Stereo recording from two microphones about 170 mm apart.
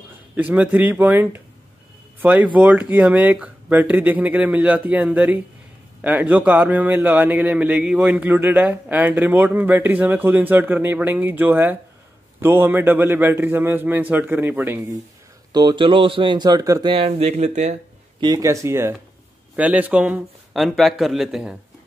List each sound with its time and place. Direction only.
0.4 s a man's voice: 10° right (ahead or behind)
15.5 s speech: 25° right (ahead or behind)
16.9 s speech: 35° right (ahead or behind)
18.2 s a man's voice: 20° right (ahead or behind); by 21.5 s 5° right (ahead or behind)